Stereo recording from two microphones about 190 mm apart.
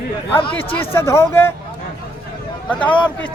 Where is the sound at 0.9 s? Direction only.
15° left (ahead or behind).